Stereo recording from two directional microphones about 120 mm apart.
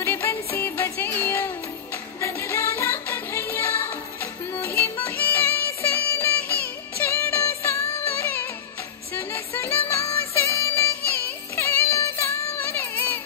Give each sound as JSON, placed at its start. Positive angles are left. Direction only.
{"t": 0.0, "sound": "music", "side_deg": 20}